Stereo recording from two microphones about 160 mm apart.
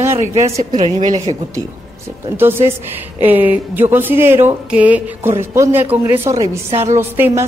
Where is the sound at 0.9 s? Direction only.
45° right (ahead or behind).